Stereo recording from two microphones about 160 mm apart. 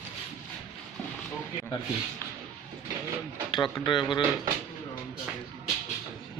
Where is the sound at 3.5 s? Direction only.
25° left (ahead or behind).